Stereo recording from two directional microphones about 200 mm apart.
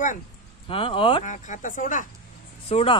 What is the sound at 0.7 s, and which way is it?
Speech, 25° left (ahead or behind).